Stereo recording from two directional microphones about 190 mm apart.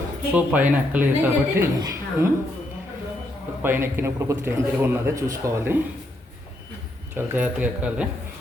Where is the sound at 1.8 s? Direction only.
20° right (ahead or behind).